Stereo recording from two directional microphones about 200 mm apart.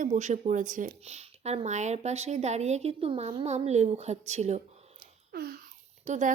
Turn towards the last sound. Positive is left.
turn(degrees=-40)  # may be behind; listen again after turning